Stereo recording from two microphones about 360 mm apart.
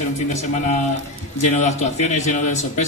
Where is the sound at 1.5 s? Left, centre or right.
Centre.